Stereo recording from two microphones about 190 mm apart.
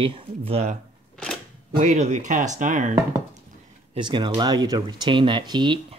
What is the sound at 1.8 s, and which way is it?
Speech, 35° right (ahead or behind).